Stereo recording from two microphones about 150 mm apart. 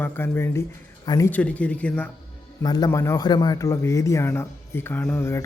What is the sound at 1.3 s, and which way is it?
Speech, 10° left (ahead or behind).